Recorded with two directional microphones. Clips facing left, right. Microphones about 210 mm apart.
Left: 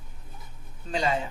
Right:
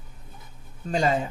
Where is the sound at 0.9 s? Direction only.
45° right (ahead or behind).